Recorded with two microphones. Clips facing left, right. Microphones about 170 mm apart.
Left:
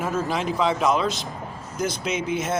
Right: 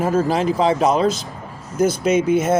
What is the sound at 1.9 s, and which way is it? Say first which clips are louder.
Speech: right 10 dB; 50° right (ahead or behind).